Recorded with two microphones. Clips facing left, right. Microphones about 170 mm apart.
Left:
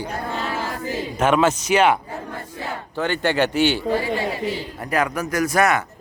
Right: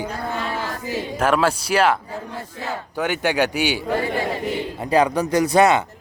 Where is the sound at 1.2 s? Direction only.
Centre (ahead or behind).